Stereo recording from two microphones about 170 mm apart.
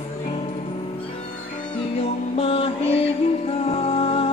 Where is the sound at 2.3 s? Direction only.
35° left (ahead or behind).